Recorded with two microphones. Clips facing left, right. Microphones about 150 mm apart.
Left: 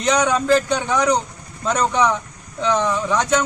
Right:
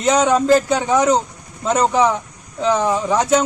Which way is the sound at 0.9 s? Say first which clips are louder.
Right 3 dB; 25° right (ahead or behind).